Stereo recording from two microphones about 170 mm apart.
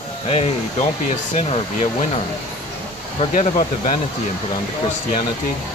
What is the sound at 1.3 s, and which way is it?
Speech, 40° left (ahead or behind).